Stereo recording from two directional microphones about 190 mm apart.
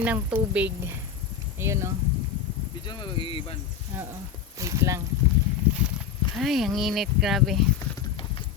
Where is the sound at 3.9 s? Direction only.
10° right (ahead or behind).